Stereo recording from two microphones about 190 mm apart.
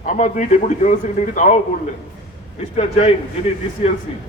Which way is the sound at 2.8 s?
30° left (ahead or behind).